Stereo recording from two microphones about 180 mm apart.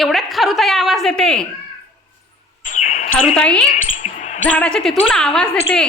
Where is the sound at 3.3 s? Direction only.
5° left (ahead or behind).